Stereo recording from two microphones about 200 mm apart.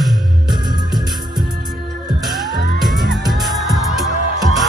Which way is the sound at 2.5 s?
50° right (ahead or behind).